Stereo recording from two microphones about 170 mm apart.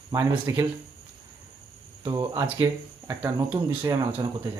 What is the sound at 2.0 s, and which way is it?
Speech, 20° right (ahead or behind).